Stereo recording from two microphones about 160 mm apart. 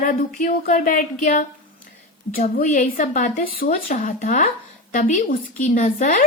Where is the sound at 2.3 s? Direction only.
60° left (ahead or behind).